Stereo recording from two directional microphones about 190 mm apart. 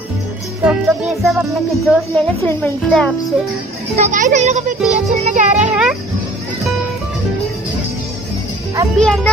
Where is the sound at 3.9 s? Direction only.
40° right (ahead or behind).